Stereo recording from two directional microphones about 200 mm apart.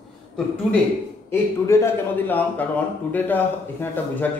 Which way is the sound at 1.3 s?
10° left (ahead or behind).